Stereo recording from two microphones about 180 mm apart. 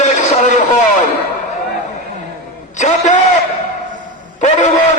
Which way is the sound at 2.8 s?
40° left (ahead or behind).